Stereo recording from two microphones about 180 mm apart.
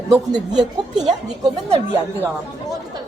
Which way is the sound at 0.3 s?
25° right (ahead or behind).